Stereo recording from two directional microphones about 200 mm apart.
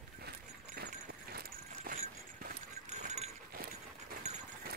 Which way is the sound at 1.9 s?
45° right (ahead or behind).